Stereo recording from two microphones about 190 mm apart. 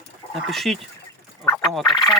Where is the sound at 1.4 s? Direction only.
10° left (ahead or behind).